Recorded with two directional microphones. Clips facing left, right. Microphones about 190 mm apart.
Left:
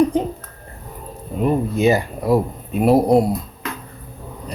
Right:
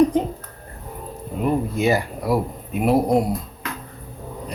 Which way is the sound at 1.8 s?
20° left (ahead or behind).